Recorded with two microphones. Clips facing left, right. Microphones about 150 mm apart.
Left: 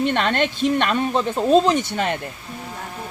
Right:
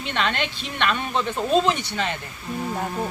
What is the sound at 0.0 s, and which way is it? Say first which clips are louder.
Speech: left 6 dB; 50° left (ahead or behind).